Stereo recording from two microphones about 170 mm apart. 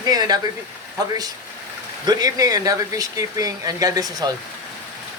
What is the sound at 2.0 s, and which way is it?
Speech, 20° right (ahead or behind).